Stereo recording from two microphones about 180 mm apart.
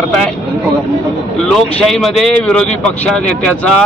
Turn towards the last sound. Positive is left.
turn(degrees=5)  # may be behind; listen again after turning